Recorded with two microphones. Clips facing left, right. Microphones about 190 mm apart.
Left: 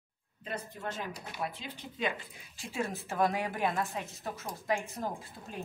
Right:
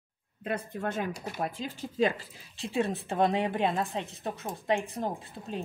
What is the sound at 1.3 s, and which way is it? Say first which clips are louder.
A woman's voice: right 5 dB; 45° right (ahead or behind).